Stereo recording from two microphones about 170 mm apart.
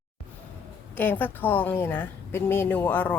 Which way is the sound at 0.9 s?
10° left (ahead or behind).